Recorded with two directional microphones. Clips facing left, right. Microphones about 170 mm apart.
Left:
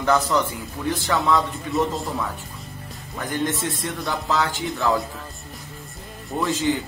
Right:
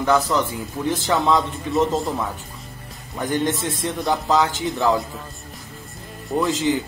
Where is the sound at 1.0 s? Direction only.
20° right (ahead or behind).